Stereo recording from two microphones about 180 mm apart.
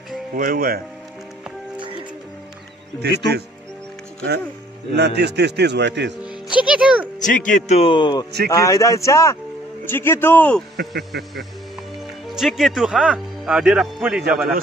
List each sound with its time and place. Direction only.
0.4 s speech: 50° right (ahead or behind)
3.0 s a man's voice: 65° right (ahead or behind)
4.9 s a man's voice: 70° right (ahead or behind)
6.2 s music: 5° right (ahead or behind)
7.2 s speech: 45° left (ahead or behind); by 10.6 s 10° left (ahead or behind)
10.8 s speech: 65° right (ahead or behind)
12.4 s speech: centre (ahead or behind)